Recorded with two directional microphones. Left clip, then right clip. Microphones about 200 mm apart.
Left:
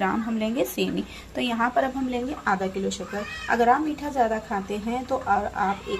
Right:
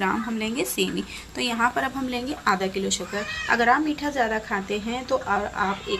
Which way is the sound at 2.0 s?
10° left (ahead or behind).